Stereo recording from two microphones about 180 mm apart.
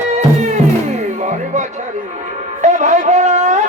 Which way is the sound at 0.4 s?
40° right (ahead or behind).